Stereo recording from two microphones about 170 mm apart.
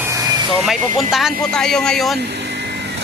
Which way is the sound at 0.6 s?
Centre (ahead or behind).